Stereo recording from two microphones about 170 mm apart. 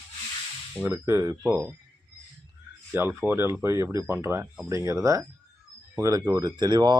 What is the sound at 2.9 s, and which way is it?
Speech, 10° right (ahead or behind).